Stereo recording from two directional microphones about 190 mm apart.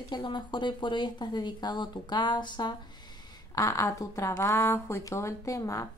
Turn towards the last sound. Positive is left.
turn(degrees=15)  # may be behind; listen again after turning